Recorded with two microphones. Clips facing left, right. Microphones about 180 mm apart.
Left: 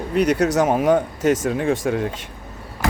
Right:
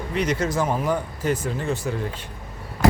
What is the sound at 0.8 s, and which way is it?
Speech, 90° left.